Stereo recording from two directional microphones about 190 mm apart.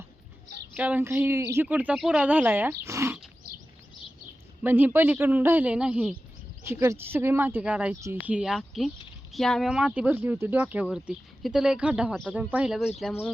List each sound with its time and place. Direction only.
0.8 s speech: 10° right (ahead or behind)
4.6 s speech: 10° right (ahead or behind)